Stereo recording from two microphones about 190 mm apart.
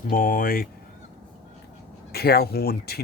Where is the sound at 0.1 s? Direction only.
45° left (ahead or behind).